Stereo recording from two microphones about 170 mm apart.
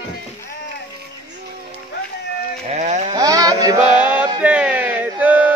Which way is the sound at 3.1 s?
20° right (ahead or behind).